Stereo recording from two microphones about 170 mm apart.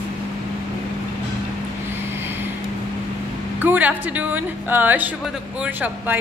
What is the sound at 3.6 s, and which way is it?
A woman's voice, 10° right (ahead or behind).